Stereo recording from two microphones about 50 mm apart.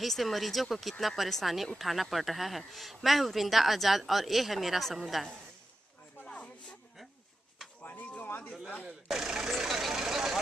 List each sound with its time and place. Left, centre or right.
0.0 s speech: centre
6.2 s a sound: left
9.0 s speech: centre
9.5 s vehicle: centre